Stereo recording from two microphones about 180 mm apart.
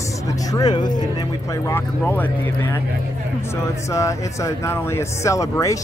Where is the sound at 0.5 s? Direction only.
20° left (ahead or behind).